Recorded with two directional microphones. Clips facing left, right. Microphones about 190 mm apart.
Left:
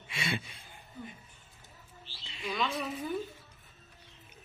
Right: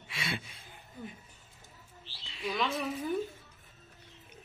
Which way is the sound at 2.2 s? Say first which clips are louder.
Right 2 dB; centre (ahead or behind).